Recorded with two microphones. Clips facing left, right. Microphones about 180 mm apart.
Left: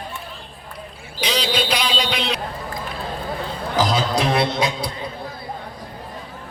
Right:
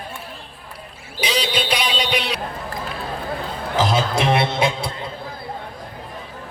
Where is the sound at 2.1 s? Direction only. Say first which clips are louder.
Right 1 dB; 10° right (ahead or behind).